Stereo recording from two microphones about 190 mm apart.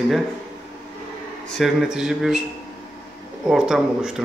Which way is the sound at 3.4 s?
5° right (ahead or behind).